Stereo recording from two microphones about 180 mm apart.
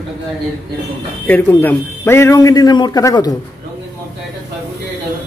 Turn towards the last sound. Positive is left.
turn(degrees=20)  # may be behind; listen again after turning